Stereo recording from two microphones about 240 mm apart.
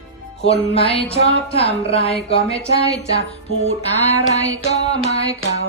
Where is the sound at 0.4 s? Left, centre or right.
Left.